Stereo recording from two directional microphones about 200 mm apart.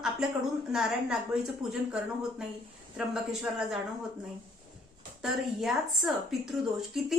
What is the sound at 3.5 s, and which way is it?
Speech, 5° right (ahead or behind).